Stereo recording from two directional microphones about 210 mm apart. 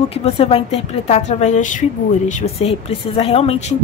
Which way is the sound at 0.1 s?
30° left (ahead or behind).